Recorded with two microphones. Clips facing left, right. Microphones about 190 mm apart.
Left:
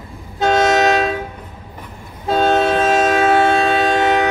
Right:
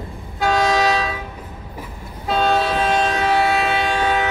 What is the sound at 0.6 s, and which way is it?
Train, 45° left (ahead or behind).